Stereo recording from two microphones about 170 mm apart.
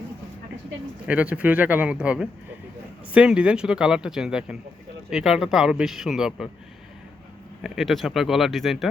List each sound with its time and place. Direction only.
1.0 s speech: 5° right (ahead or behind)
7.6 s speech: centre (ahead or behind)